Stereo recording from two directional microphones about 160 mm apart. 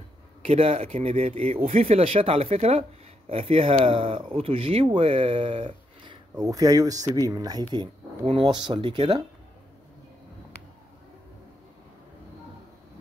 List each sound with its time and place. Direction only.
0.4 s speech: 40° right (ahead or behind)